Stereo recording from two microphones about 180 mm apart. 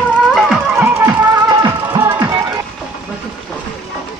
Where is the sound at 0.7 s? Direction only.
15° right (ahead or behind).